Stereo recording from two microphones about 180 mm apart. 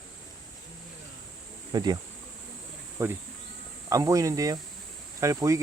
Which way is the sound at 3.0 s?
15° right (ahead or behind).